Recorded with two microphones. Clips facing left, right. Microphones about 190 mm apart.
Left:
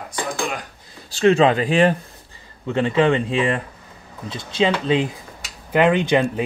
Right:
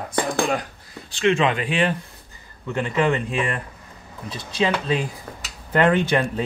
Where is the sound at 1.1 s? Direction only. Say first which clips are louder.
Left 5 dB; 35° left (ahead or behind).